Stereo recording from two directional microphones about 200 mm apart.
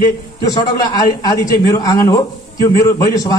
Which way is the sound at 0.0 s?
20° left (ahead or behind).